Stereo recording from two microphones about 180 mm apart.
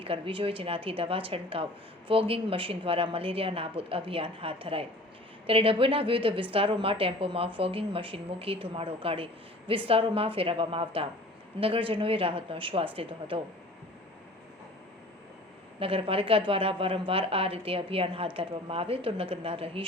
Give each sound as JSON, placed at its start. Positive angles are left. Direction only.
{"t": 0.0, "sound": "a woman's voice", "side_deg": -30}
{"t": 15.8, "sound": "a woman's voice", "side_deg": -30}